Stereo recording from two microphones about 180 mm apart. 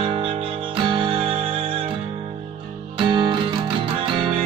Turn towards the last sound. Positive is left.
turn(degrees=-25)  # may be behind; listen again after turning